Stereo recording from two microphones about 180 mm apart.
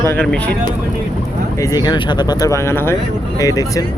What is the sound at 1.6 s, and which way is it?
Speech, 20° left (ahead or behind).